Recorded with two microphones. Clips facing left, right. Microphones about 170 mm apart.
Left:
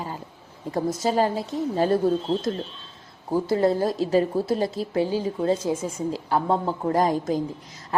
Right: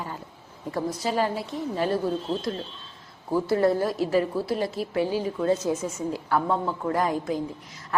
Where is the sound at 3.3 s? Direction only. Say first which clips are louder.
Left 1 dB; 20° left (ahead or behind).